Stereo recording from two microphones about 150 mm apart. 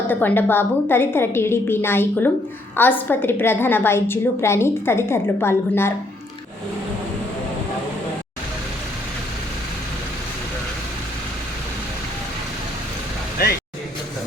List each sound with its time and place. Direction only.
0.1 s a woman's voice: 10° left (ahead or behind)